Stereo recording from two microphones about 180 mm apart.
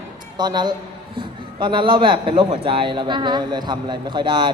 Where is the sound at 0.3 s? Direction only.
25° right (ahead or behind).